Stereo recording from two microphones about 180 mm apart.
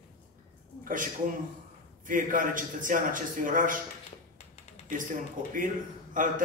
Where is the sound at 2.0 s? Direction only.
50° right (ahead or behind).